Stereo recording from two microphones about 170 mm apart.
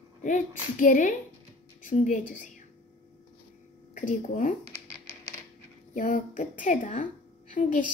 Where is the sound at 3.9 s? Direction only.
50° left (ahead or behind).